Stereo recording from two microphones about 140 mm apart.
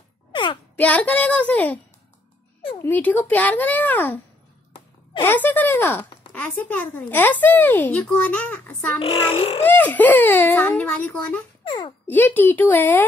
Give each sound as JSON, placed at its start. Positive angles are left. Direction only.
{"t": 0.3, "sound": "a sound", "side_deg": 35}
{"t": 0.7, "sound": "speech", "side_deg": 10}
{"t": 2.8, "sound": "speech", "side_deg": 10}
{"t": 5.2, "sound": "speech", "side_deg": 15}
{"t": 9.0, "sound": "a child's voice", "side_deg": 45}
{"t": 9.7, "sound": "speech", "side_deg": 10}
{"t": 11.6, "sound": "a child's voice", "side_deg": 35}
{"t": 12.1, "sound": "speech", "side_deg": 15}